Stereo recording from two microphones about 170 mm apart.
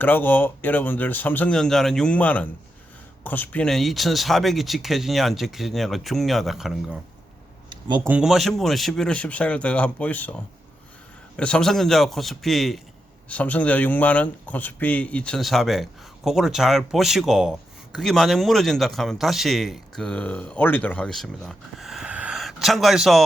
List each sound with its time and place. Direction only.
0.0 s speech: 10° left (ahead or behind)
7.7 s a sound: 30° right (ahead or behind)
8.0 s speech: 5° right (ahead or behind)